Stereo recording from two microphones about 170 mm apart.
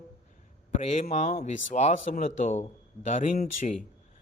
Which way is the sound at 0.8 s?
40° left (ahead or behind).